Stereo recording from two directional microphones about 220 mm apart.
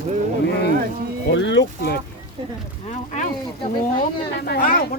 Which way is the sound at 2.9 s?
35° left (ahead or behind).